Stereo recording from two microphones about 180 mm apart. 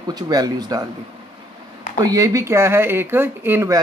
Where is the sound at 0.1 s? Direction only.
20° right (ahead or behind).